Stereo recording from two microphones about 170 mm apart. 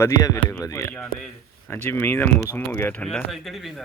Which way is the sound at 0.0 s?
20° left (ahead or behind).